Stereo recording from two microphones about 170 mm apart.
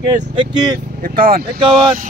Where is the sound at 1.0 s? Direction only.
60° right (ahead or behind).